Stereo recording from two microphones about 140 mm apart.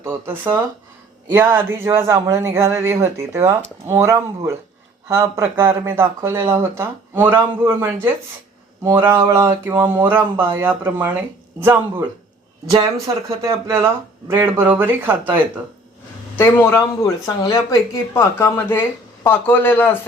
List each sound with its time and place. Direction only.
0.0 s speech: 15° right (ahead or behind)
13.4 s speech: 20° right (ahead or behind)
16.4 s speech: 15° left (ahead or behind)